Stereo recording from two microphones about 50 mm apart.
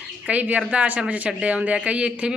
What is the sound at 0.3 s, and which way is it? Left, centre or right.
Speech, right.